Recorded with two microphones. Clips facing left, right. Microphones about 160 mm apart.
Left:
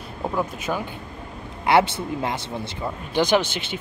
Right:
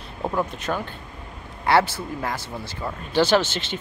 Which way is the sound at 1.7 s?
20° left (ahead or behind).